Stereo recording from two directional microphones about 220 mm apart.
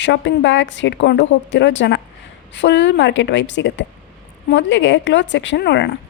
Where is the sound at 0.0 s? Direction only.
55° left (ahead or behind).